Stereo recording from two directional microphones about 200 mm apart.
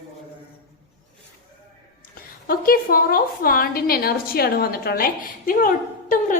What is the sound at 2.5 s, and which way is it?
A woman's voice, 45° left (ahead or behind).